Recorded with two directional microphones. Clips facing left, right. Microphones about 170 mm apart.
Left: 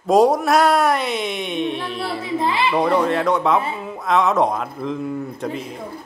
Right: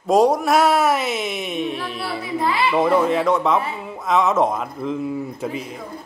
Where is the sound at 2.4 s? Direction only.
25° left (ahead or behind).